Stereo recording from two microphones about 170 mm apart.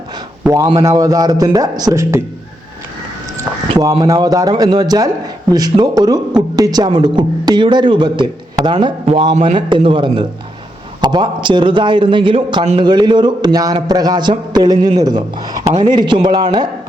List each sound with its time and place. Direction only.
0.4 s a man's voice: 20° right (ahead or behind)
3.3 s a man's voice: 20° right (ahead or behind)